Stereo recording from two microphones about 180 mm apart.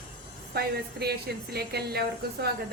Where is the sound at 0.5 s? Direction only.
60° right (ahead or behind).